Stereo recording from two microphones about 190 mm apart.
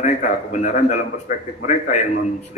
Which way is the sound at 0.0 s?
40° left (ahead or behind).